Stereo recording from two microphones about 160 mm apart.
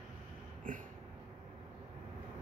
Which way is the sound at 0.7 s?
60° right (ahead or behind).